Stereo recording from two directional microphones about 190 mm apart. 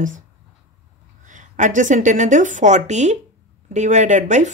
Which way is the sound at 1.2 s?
40° right (ahead or behind).